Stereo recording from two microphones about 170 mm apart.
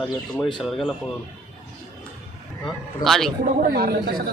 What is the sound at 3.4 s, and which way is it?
Speech, 60° right (ahead or behind).